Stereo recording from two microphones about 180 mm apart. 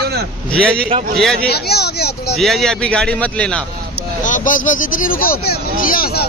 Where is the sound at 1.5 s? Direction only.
60° left (ahead or behind).